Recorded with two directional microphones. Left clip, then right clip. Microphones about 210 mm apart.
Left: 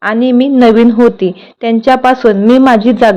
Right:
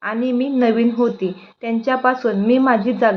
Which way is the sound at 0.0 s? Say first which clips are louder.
Left 10 dB; 45° left (ahead or behind).